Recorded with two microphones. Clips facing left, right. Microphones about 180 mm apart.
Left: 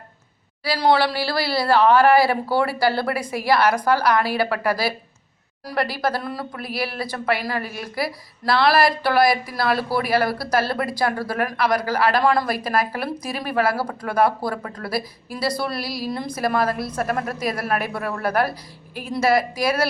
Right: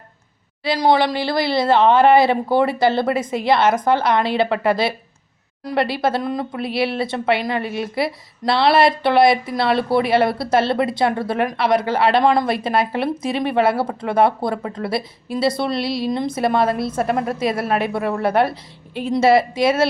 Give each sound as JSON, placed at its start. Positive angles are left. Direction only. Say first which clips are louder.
{"t": 0.6, "sound": "speech", "louder": "right 2 dB", "side_deg": -20}